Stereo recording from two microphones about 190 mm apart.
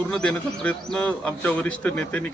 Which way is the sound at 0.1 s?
5° left (ahead or behind).